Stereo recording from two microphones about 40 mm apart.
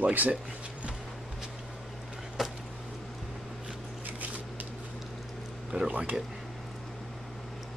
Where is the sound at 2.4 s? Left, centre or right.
Centre.